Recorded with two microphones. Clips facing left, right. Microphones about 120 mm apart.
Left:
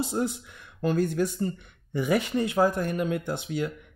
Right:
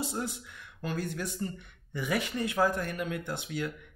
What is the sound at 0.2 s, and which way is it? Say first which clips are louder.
Speech: left 7 dB; 35° left (ahead or behind).